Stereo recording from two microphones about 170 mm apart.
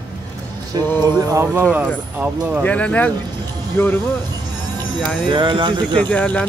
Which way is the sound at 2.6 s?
10° left (ahead or behind).